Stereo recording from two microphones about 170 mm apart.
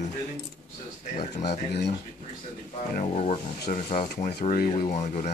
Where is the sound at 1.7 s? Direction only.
75° left (ahead or behind).